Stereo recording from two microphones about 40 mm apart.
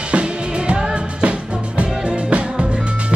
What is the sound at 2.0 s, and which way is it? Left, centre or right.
Music, right.